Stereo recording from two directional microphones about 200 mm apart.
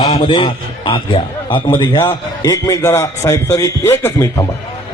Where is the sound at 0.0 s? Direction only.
25° left (ahead or behind).